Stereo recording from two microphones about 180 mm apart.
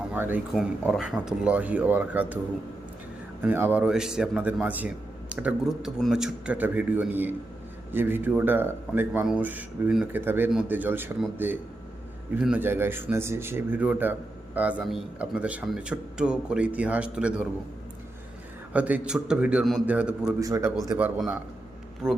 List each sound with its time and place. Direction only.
0.1 s speech: 10° right (ahead or behind)
3.4 s speech: 10° right (ahead or behind)
18.7 s speech: 10° right (ahead or behind)
20.4 s speech: 15° right (ahead or behind)
20.9 s a man's voice: 5° right (ahead or behind)